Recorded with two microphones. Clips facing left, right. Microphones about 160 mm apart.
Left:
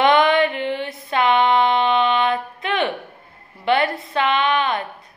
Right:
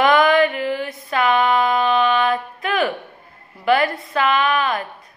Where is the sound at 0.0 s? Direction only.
25° left (ahead or behind).